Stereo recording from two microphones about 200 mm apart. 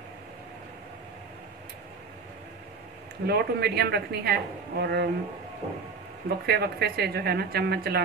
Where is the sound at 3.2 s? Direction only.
55° right (ahead or behind).